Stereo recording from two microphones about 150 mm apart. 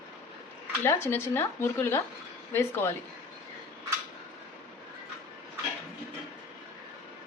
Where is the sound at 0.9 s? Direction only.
20° left (ahead or behind).